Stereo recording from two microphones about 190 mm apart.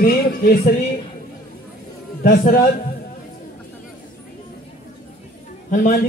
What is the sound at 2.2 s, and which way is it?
Speech, 50° left (ahead or behind).